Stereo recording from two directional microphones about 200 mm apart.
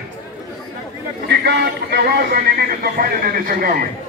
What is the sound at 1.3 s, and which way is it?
A man's voice, 55° right (ahead or behind).